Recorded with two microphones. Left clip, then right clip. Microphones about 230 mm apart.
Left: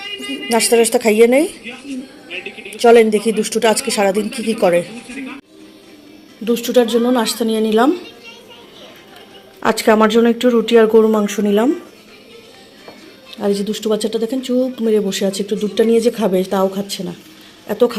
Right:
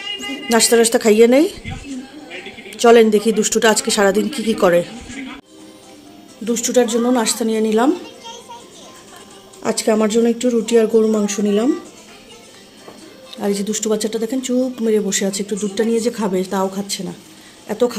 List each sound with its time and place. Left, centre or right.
0.2 s speech: centre
2.8 s speech: centre
6.4 s speech: centre
9.6 s speech: centre
13.3 s a woman's voice: centre